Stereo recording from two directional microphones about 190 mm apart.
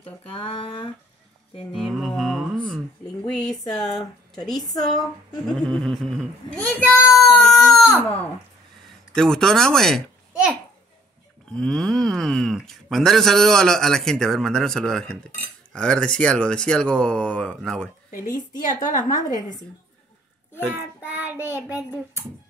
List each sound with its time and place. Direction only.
0.3 s speech: 30° left (ahead or behind)
1.8 s mantra: centre (ahead or behind)
3.7 s speech: centre (ahead or behind)
6.9 s baby cry: centre (ahead or behind)
9.1 s a child's voice: 5° left (ahead or behind)
11.5 s speech: 5° left (ahead or behind)
19.1 s a woman's voice: 40° left (ahead or behind)
20.6 s child singing: 10° right (ahead or behind)